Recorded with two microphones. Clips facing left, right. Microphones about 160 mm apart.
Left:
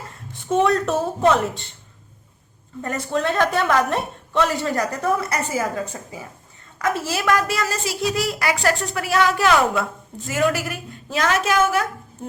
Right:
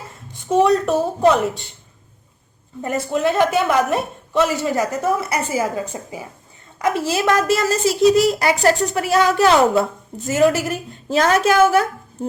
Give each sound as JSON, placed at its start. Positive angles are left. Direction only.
{"t": 0.4, "sound": "a woman's voice", "side_deg": 0}
{"t": 2.8, "sound": "a woman's voice", "side_deg": -10}